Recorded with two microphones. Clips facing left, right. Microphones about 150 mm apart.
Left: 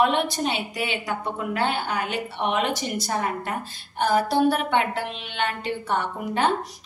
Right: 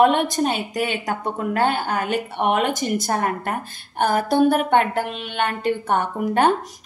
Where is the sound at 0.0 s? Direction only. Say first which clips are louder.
Right 5 dB; 45° right (ahead or behind).